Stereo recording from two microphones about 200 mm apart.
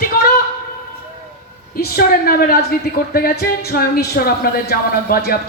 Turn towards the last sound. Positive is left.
turn(degrees=50)  # may be behind; listen again after turning